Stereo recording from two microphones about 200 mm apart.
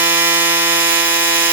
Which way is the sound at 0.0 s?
10° right (ahead or behind).